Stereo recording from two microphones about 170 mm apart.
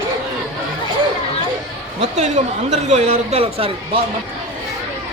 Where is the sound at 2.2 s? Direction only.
40° right (ahead or behind).